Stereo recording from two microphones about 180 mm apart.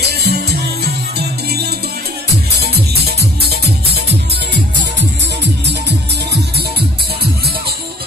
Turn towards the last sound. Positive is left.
turn(degrees=-70)  # may be behind; listen again after turning